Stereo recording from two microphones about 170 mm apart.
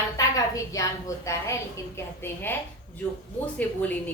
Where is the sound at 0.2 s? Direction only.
20° left (ahead or behind).